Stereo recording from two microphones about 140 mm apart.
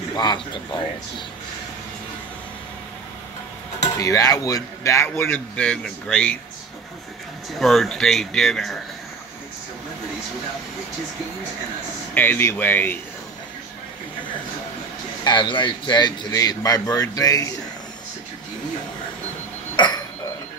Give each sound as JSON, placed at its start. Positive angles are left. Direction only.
{"t": 0.1, "sound": "speech", "side_deg": 30}
{"t": 4.0, "sound": "a man's voice", "side_deg": 25}
{"t": 7.5, "sound": "speech", "side_deg": 0}
{"t": 12.1, "sound": "speech", "side_deg": 15}
{"t": 15.2, "sound": "a man's voice", "side_deg": 35}
{"t": 19.8, "sound": "a sound", "side_deg": 35}